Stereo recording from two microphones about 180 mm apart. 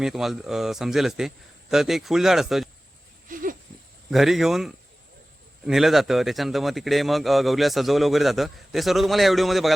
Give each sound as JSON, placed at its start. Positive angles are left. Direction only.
{"t": 0.0, "sound": "a man's voice", "side_deg": 0}
{"t": 3.2, "sound": "a sound", "side_deg": -50}
{"t": 4.1, "sound": "a man's voice", "side_deg": 0}